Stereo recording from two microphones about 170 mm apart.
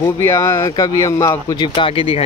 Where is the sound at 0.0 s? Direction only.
15° left (ahead or behind).